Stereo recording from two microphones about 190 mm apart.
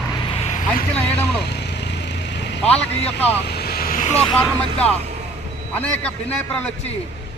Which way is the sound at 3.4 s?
60° left (ahead or behind).